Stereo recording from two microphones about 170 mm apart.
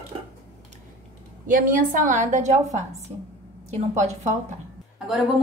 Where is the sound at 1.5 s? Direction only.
50° right (ahead or behind).